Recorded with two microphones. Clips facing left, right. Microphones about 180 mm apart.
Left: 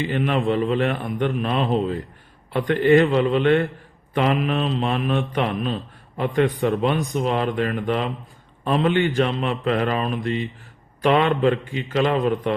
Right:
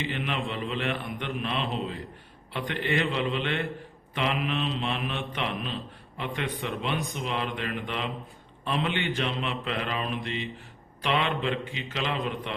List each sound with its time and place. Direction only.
0.1 s a man's voice: 40° left (ahead or behind)